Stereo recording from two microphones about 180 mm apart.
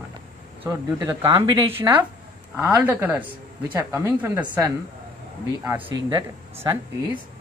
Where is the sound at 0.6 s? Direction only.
15° right (ahead or behind).